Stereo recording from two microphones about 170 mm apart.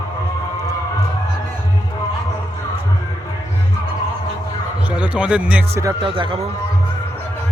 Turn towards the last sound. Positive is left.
turn(degrees=-30)  # may be behind; listen again after turning